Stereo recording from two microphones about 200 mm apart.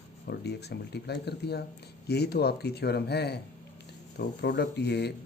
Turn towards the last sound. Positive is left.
turn(degrees=55)  # may be behind; listen again after turning